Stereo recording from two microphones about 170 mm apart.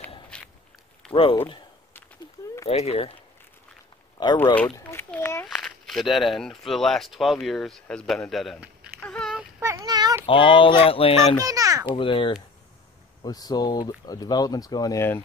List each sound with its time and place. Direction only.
0.3 s walk: 5° left (ahead or behind)
1.1 s speech: 30° left (ahead or behind)
2.7 s speech: 35° left (ahead or behind)
4.2 s a child's voice: 25° left (ahead or behind); by 8.9 s 5° right (ahead or behind)
9.0 s a sound: 5° left (ahead or behind)
9.6 s child singing: 20° right (ahead or behind)
10.2 s speech: 30° left (ahead or behind)
11.3 s a child's voice: 20° right (ahead or behind)
11.9 s speech: 30° left (ahead or behind); by 15.2 s 15° left (ahead or behind)